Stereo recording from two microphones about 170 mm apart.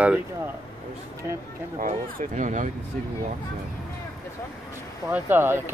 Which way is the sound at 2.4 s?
45° right (ahead or behind).